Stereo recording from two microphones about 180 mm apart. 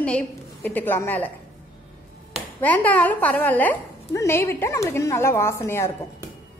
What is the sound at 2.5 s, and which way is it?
A woman's voice, 10° left (ahead or behind).